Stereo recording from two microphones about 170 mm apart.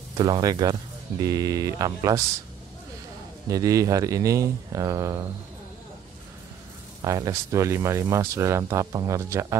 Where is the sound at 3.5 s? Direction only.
20° right (ahead or behind).